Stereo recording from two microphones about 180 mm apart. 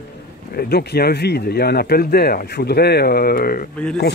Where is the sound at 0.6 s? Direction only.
60° left (ahead or behind).